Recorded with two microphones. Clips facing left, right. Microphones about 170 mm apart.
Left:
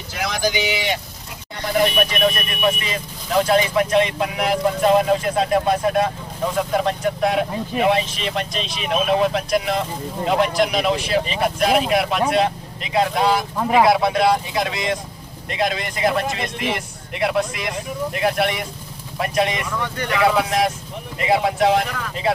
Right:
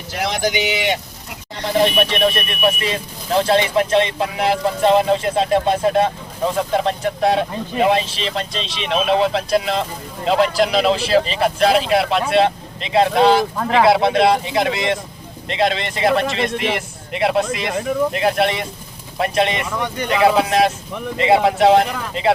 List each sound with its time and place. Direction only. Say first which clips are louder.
0.2 s speech: right 2 dB; 25° right (ahead or behind)
13.6 s speech: even; 10° left (ahead or behind)
13.8 s speech: right 6 dB; 25° right (ahead or behind)
16.2 s speech: right 5 dB; 75° right (ahead or behind)
16.7 s speech: right 4 dB; 25° right (ahead or behind)